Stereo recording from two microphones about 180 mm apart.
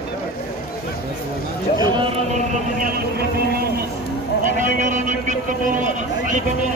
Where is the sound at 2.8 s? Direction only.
55° right (ahead or behind).